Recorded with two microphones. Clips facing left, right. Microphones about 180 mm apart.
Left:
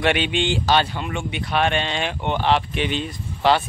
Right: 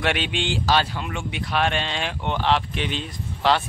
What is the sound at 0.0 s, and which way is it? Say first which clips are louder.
Speech: left 4 dB; centre (ahead or behind).